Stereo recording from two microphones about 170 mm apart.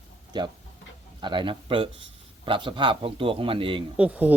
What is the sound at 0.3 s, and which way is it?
Speech, 25° right (ahead or behind).